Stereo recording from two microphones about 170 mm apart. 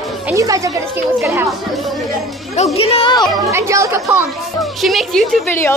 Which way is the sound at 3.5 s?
15° right (ahead or behind).